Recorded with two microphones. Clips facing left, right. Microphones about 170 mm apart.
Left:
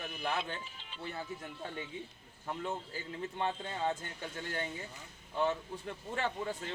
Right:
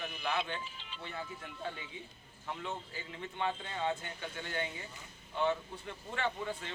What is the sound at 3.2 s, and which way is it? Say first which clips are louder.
Speech: left 1 dB; 35° left (ahead or behind).